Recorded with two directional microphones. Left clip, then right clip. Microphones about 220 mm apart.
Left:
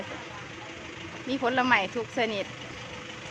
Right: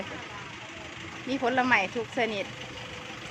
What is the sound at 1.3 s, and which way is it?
Speech, centre (ahead or behind).